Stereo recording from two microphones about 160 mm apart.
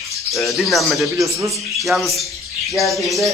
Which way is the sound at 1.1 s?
20° right (ahead or behind).